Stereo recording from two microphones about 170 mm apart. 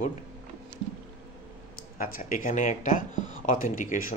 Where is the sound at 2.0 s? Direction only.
55° left (ahead or behind).